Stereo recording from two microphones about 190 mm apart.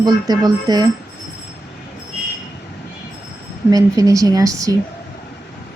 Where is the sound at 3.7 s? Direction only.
20° right (ahead or behind).